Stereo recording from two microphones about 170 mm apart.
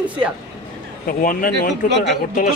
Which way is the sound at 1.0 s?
55° left (ahead or behind).